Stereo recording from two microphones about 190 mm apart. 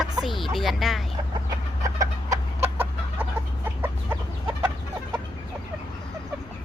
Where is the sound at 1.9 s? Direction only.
15° right (ahead or behind).